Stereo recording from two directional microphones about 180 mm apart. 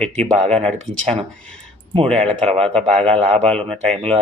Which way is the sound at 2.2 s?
35° right (ahead or behind).